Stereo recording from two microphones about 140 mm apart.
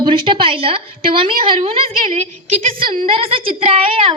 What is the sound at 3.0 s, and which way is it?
A woman's voice, 40° right (ahead or behind).